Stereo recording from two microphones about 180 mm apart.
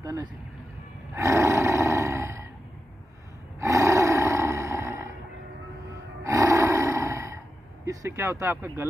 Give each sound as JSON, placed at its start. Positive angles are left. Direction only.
{"t": 0.0, "sound": "speech", "side_deg": -20}
{"t": 1.1, "sound": "roar", "side_deg": -15}
{"t": 3.5, "sound": "a sound", "side_deg": -15}
{"t": 5.9, "sound": "gasp", "side_deg": -20}